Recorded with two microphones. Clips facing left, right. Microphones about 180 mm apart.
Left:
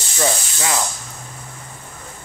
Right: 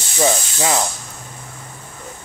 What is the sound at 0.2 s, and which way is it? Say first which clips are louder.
Speech: right 4 dB; 25° right (ahead or behind).